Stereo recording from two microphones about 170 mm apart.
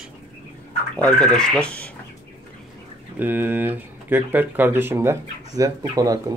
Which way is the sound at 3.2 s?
10° right (ahead or behind).